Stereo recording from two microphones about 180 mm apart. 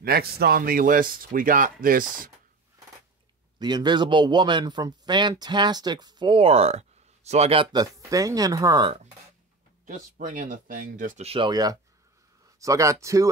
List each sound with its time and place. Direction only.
0.0 s speech: 60° right (ahead or behind)
3.5 s speech: 25° right (ahead or behind)
7.7 s speech: 20° right (ahead or behind)
9.8 s speech: 45° right (ahead or behind)
11.2 s speech: 25° right (ahead or behind)